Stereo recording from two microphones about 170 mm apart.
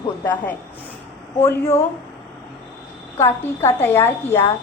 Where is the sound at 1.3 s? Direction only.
15° left (ahead or behind).